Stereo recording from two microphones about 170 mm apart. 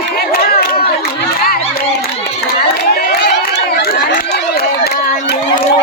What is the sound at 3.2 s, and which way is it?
Run, 80° left.